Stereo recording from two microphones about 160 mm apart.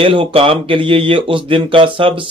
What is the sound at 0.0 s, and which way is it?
A man's voice, 35° right (ahead or behind).